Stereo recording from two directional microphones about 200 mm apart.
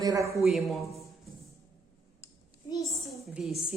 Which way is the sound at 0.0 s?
15° right (ahead or behind).